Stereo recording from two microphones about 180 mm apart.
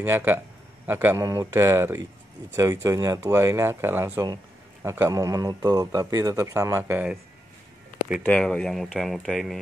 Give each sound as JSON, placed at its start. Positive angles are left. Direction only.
{"t": 0.0, "sound": "a man's voice", "side_deg": -10}
{"t": 8.3, "sound": "speech", "side_deg": 5}